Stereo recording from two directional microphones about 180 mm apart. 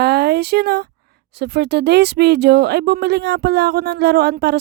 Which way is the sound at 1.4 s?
70° right (ahead or behind).